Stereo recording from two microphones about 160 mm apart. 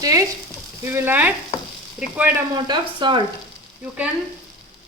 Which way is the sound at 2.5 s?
30° right (ahead or behind).